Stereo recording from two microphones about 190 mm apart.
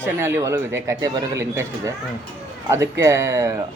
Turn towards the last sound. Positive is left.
turn(degrees=-15)  # may be behind; listen again after turning